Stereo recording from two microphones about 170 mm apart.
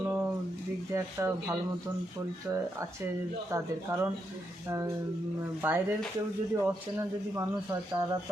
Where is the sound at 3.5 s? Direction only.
15° right (ahead or behind).